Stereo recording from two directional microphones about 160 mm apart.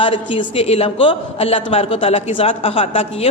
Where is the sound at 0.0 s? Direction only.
30° left (ahead or behind).